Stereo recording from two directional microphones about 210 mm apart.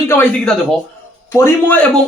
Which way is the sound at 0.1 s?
10° left (ahead or behind).